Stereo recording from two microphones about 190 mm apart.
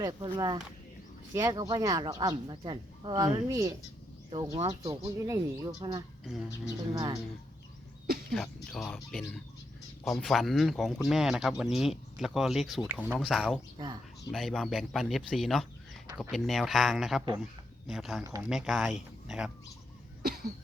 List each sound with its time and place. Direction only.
0.0 s speech: 20° right (ahead or behind)
8.3 s speech: centre (ahead or behind)
13.7 s speech: 25° right (ahead or behind)
14.3 s speech: centre (ahead or behind)
18.2 s speech: 15° right (ahead or behind)
18.4 s speech: centre (ahead or behind)
20.2 s cough: 55° right (ahead or behind)